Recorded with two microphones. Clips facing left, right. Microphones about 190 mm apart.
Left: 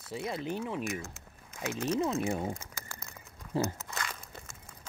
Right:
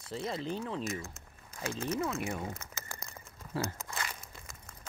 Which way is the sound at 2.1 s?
30° left (ahead or behind).